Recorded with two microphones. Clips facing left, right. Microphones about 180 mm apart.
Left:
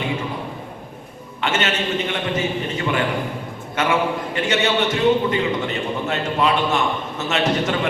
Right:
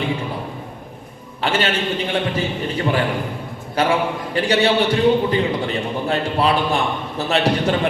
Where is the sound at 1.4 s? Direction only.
35° right (ahead or behind).